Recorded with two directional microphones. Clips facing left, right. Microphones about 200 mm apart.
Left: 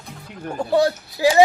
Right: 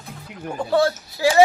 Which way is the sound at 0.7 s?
15° left (ahead or behind).